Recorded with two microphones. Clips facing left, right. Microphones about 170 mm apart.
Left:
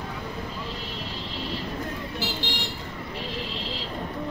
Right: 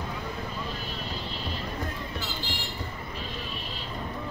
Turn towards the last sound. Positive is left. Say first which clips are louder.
# left 4 dB
turn(degrees=90)